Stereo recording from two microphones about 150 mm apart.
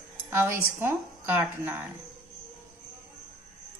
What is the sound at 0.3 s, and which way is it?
A woman's voice, 15° right (ahead or behind).